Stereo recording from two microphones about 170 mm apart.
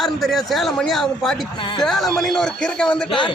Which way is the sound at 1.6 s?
30° left (ahead or behind).